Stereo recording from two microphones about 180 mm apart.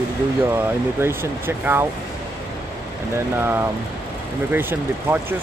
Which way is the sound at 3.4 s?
10° right (ahead or behind).